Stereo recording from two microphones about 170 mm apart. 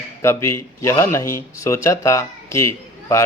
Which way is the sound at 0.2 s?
15° left (ahead or behind).